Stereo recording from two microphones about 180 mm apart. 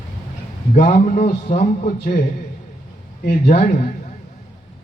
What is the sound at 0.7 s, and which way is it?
A man's voice, 40° left (ahead or behind).